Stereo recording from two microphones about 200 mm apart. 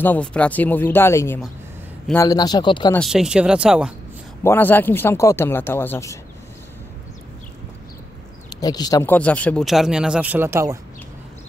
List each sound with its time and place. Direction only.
0.0 s a man's voice: 5° left (ahead or behind)
2.9 s speech: centre (ahead or behind)
4.4 s a man's voice: 10° left (ahead or behind)
8.5 s speech: 20° left (ahead or behind); by 10.8 s 15° right (ahead or behind)